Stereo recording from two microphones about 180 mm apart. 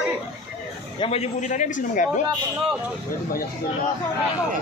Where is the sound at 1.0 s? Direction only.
35° left (ahead or behind).